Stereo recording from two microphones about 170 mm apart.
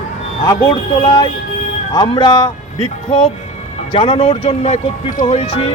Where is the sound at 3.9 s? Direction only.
35° left (ahead or behind).